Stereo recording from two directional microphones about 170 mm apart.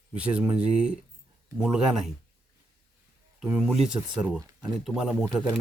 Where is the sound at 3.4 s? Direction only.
5° right (ahead or behind).